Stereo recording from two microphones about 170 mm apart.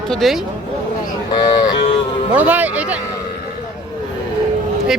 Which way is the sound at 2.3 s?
10° right (ahead or behind).